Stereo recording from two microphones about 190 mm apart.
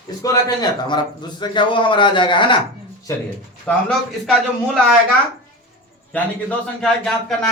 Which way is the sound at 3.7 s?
10° left (ahead or behind).